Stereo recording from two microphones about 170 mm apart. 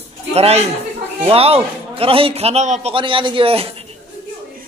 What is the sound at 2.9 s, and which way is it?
Speech, 30° right (ahead or behind).